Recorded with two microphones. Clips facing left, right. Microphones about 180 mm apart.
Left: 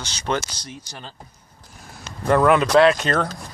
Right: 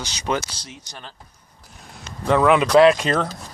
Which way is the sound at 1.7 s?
Centre (ahead or behind).